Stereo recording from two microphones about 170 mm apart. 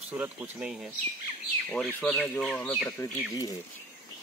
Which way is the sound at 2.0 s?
5° left (ahead or behind).